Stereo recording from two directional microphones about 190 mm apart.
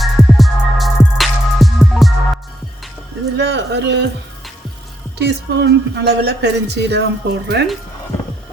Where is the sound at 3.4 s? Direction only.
65° right (ahead or behind).